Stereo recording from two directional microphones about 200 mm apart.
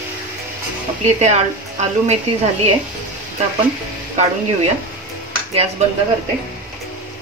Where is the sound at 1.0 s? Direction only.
35° right (ahead or behind).